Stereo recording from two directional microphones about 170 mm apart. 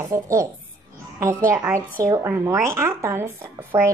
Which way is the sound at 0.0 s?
20° right (ahead or behind).